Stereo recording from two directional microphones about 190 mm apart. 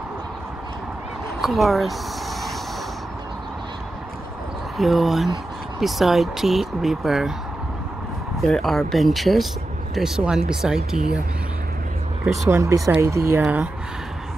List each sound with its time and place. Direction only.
1.4 s speech: centre (ahead or behind)
4.7 s speech: centre (ahead or behind)
8.4 s speech: centre (ahead or behind)
12.4 s speech: 15° right (ahead or behind)